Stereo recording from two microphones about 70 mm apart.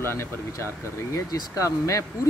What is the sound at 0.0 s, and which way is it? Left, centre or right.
Speech, left.